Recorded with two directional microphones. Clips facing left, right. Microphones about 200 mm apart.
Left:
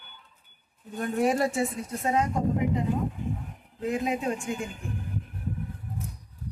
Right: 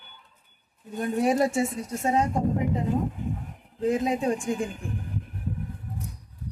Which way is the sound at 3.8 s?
30° right (ahead or behind).